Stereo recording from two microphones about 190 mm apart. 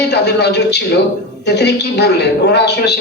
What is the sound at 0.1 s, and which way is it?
Speech, 60° left (ahead or behind).